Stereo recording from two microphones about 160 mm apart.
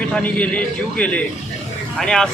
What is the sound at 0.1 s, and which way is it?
Speech, 10° left (ahead or behind).